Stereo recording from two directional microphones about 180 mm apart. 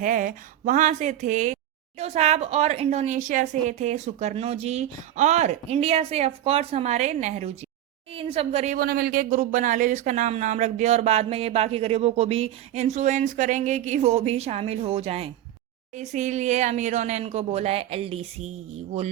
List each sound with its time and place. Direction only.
0.0 s speech: 50° right (ahead or behind)
8.8 s speech: 55° right (ahead or behind); by 19.1 s 35° right (ahead or behind)